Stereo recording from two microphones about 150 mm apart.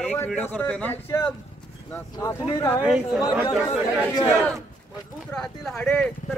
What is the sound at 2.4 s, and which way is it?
Speech, 30° left (ahead or behind).